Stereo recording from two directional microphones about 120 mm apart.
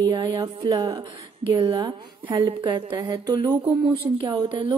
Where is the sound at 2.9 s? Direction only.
30° right (ahead or behind).